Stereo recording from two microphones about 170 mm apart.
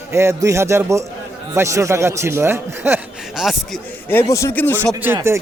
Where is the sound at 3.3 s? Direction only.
Centre (ahead or behind).